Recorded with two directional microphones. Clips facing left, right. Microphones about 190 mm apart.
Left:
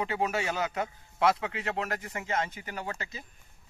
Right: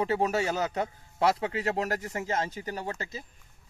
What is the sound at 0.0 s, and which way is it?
Speech, 40° right (ahead or behind).